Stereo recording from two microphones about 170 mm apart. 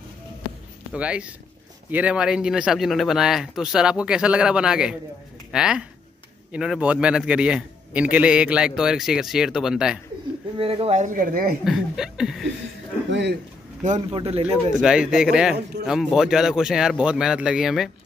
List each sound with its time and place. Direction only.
0.9 s a man's voice: 5° right (ahead or behind)
10.6 s speech: 35° right (ahead or behind); by 11.5 s 55° right (ahead or behind)
11.6 s a man's voice: centre (ahead or behind)
13.1 s a man's voice: 90° right
14.1 s speech: 35° right (ahead or behind)
14.7 s a man's voice: 5° right (ahead or behind)